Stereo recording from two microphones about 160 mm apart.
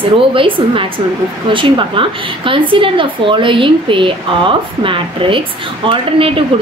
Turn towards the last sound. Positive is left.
turn(degrees=-35)  # may be behind; listen again after turning